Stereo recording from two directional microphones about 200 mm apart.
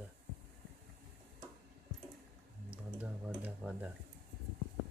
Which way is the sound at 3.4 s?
5° right (ahead or behind).